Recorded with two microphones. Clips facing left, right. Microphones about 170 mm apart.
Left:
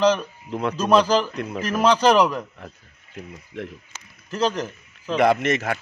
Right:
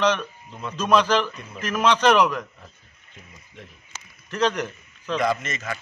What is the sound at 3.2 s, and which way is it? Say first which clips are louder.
Speech: left 12 dB; 70° left (ahead or behind).